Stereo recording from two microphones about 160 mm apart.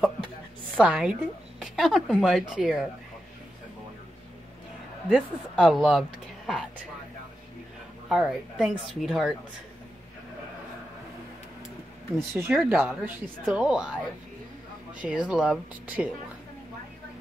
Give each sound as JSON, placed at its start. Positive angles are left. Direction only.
{"t": 0.7, "sound": "a woman's voice", "side_deg": -5}
{"t": 5.1, "sound": "speech", "side_deg": 0}
{"t": 8.1, "sound": "a woman's voice", "side_deg": 0}
{"t": 12.2, "sound": "speech", "side_deg": -15}
{"t": 15.0, "sound": "speech", "side_deg": -10}